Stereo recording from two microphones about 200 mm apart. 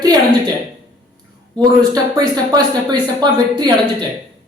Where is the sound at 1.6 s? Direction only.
20° right (ahead or behind).